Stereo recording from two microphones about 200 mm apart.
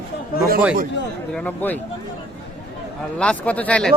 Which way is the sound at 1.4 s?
10° left (ahead or behind).